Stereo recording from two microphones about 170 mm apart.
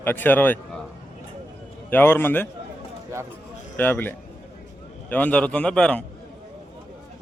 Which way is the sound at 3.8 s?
10° left (ahead or behind).